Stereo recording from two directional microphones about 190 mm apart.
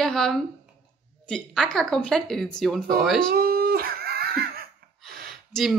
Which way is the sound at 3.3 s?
55° right (ahead or behind).